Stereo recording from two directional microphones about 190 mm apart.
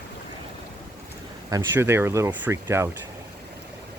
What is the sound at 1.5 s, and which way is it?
Speech, 15° right (ahead or behind).